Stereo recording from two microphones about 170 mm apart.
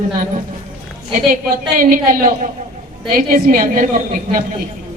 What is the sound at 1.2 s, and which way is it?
A woman's voice, 55° right (ahead or behind).